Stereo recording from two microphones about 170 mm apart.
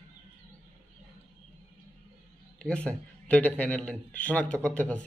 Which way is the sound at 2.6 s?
5° left (ahead or behind).